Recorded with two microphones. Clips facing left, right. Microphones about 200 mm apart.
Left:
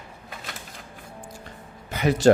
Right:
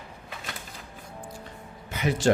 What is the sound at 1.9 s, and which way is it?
Speech, 40° left (ahead or behind).